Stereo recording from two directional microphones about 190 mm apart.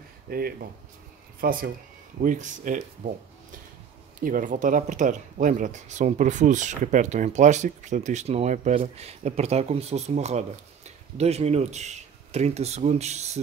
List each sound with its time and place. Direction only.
0.3 s speech: 50° right (ahead or behind)
4.2 s speech: 45° right (ahead or behind)